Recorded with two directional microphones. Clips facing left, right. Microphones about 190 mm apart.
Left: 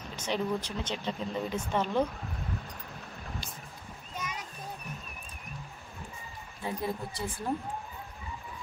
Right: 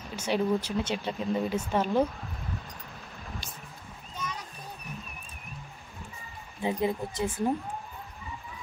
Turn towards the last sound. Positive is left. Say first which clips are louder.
# right 6 dB
turn(degrees=-20)  # may be behind; listen again after turning